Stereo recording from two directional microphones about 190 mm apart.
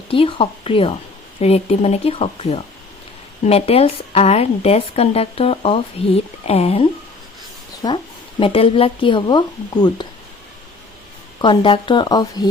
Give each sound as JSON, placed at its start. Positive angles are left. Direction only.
{"t": 0.1, "sound": "a woman's voice", "side_deg": 30}
{"t": 11.3, "sound": "speech", "side_deg": 25}